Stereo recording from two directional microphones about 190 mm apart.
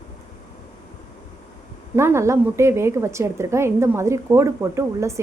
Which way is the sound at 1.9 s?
15° right (ahead or behind).